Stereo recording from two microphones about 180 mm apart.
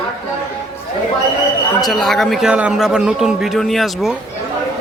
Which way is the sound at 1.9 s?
Centre (ahead or behind).